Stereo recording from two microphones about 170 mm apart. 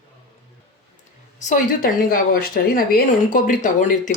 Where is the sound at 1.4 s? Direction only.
50° left (ahead or behind).